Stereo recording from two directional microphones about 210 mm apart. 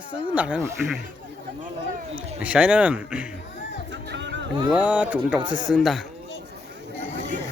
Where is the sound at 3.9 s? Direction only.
60° right (ahead or behind).